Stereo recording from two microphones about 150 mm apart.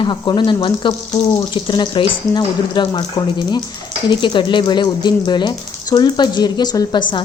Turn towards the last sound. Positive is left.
turn(degrees=25)  # may be behind; listen again after turning